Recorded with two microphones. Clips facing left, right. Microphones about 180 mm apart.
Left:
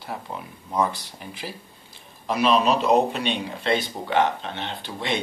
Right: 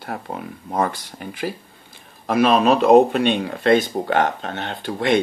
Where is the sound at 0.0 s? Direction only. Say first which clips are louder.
Right 4 dB; 55° right (ahead or behind).